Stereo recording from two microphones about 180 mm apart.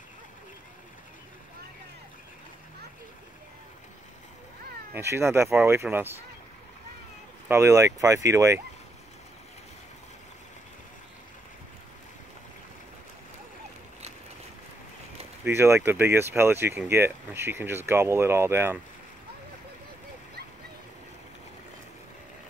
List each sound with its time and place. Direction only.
4.9 s speech: 15° right (ahead or behind)
7.4 s speech: 15° right (ahead or behind)
15.4 s speech: 15° right (ahead or behind)